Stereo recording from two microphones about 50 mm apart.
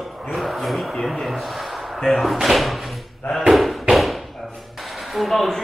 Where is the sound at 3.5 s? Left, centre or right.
Centre.